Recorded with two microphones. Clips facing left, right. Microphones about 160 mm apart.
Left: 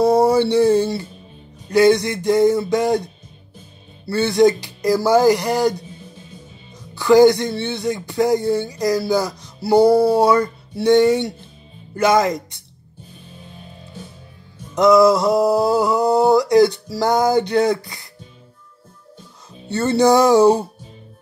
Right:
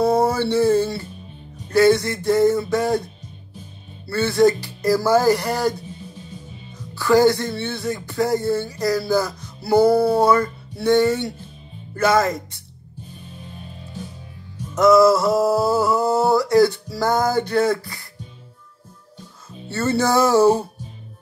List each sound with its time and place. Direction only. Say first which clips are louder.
0.0 s a sound: left 4 dB; 15° left (ahead or behind)
1.7 s speech: left 2 dB; 15° left (ahead or behind)
4.1 s speech: left 2 dB; 20° left (ahead or behind)
7.0 s speech: left 4 dB; 15° left (ahead or behind)
9.7 s music: left 2 dB; 25° left (ahead or behind)
10.1 s speech: left 2 dB; 15° left (ahead or behind)
14.8 s speech: left 1 dB; 15° left (ahead or behind)
19.7 s speech: left 5 dB; 20° left (ahead or behind)